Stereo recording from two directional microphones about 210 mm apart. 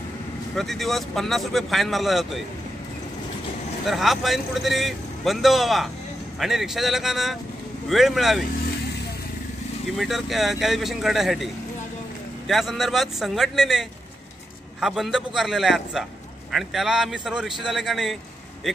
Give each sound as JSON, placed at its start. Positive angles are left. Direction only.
{"t": 0.6, "sound": "speech", "side_deg": 0}
{"t": 3.8, "sound": "speech", "side_deg": 0}
{"t": 9.9, "sound": "speech", "side_deg": 0}
{"t": 12.4, "sound": "speech", "side_deg": 0}